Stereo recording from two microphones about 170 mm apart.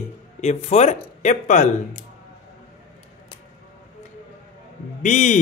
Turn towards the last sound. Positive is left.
turn(degrees=45)  # may be behind; listen again after turning